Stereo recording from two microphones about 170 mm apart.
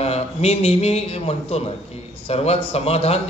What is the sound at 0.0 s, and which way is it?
A man's voice, 35° left (ahead or behind).